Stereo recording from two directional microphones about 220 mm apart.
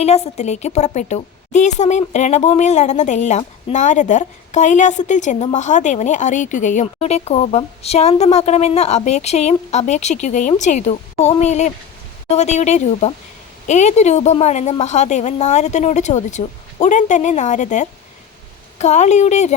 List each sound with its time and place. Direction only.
0.0 s a woman's voice: 30° left (ahead or behind)